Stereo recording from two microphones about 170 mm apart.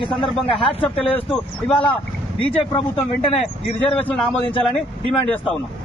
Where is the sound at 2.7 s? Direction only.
30° left (ahead or behind).